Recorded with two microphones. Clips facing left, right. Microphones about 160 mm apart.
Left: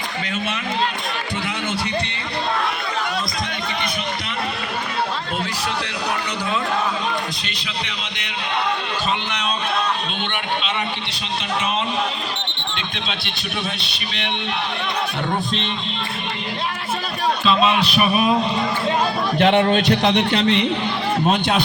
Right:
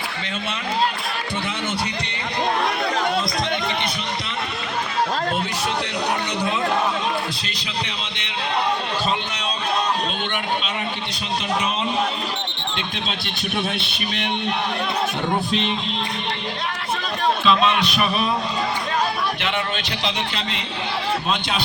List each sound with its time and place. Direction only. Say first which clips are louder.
13.7 s speech: right 3 dB; 55° right (ahead or behind)
17.4 s a man's voice: left 2 dB; 5° left (ahead or behind)
19.4 s a man's voice: left 10 dB; 40° left (ahead or behind)
20.0 s a man's voice: left 9 dB; 60° left (ahead or behind)